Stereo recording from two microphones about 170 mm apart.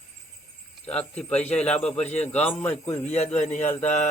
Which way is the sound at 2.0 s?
40° left (ahead or behind).